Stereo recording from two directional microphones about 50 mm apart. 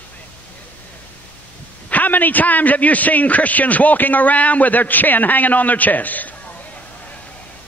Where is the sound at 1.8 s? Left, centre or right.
Left.